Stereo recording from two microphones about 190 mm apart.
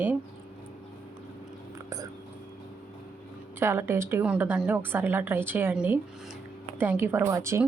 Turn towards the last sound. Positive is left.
turn(degrees=-15)  # may be behind; listen again after turning